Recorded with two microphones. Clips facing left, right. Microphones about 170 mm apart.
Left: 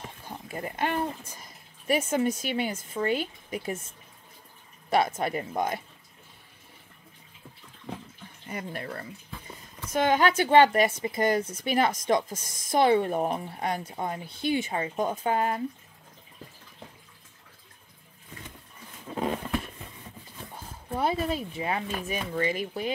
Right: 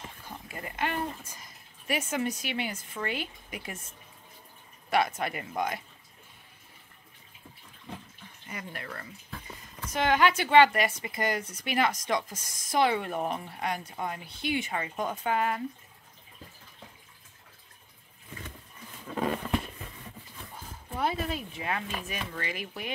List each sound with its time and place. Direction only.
0.3 s speech: 40° left (ahead or behind)
3.1 s speech: 40° left (ahead or behind)
4.9 s speech: 30° left (ahead or behind)
8.5 s speech: 35° left (ahead or behind)
9.9 s speech: 45° left (ahead or behind)
10.9 s speech: 25° left (ahead or behind)
11.7 s speech: 45° left (ahead or behind)
12.9 s speech: 35° left (ahead or behind)
19.1 s a sound: 20° left (ahead or behind)
20.9 s speech: 35° left (ahead or behind)